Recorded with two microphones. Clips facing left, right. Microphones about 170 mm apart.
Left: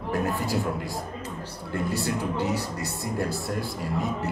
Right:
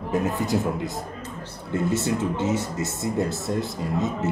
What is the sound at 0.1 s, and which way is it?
Speech, 20° right (ahead or behind).